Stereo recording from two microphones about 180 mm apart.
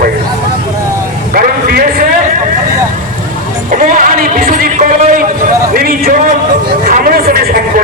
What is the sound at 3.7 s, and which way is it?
Speech, 45° right (ahead or behind).